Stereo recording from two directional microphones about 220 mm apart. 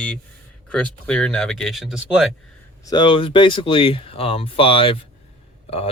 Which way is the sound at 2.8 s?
20° left (ahead or behind).